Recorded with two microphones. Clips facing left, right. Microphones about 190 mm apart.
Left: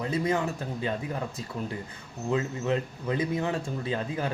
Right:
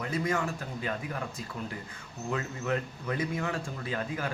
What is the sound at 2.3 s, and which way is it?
Speech, 20° left (ahead or behind).